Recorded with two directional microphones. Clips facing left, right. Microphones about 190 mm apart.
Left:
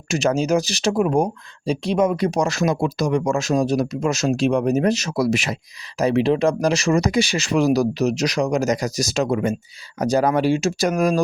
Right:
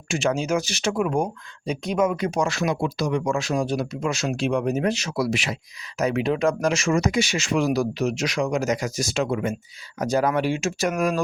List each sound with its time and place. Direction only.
0.1 s speech: 40° left (ahead or behind)
6.0 s speech: 30° left (ahead or behind)